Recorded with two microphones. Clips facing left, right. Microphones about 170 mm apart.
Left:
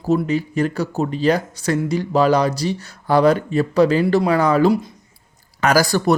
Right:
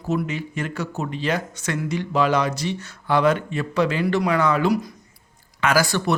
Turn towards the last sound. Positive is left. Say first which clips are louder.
# left 4 dB
turn(degrees=40)  # may be behind; listen again after turning